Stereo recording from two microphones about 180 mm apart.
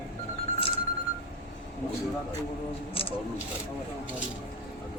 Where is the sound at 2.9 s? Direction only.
30° left (ahead or behind).